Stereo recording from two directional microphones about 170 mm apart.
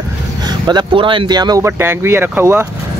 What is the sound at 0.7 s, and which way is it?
Speech, 25° right (ahead or behind).